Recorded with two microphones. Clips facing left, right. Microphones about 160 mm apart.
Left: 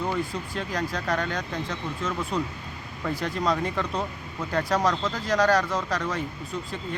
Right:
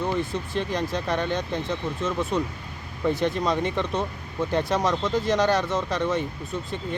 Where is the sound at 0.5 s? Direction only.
25° right (ahead or behind).